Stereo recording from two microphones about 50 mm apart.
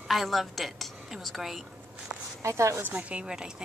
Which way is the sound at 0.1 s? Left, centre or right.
Centre.